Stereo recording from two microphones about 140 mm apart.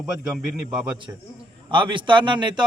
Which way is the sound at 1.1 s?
20° right (ahead or behind).